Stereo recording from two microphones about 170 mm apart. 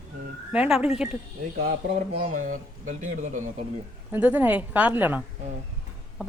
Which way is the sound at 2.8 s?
45° right (ahead or behind).